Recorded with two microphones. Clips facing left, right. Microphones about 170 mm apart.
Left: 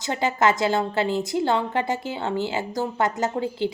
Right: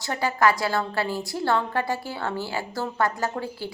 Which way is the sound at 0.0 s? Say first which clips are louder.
Left 1 dB; 20° left (ahead or behind).